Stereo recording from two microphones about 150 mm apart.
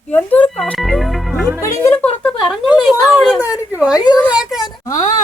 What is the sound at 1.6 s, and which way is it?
Speech, 15° left (ahead or behind).